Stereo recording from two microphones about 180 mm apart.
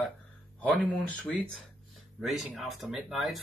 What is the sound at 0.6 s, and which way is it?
Speech, 5° left (ahead or behind).